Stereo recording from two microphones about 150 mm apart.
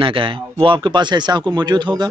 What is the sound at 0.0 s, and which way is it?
Speech, 35° right (ahead or behind).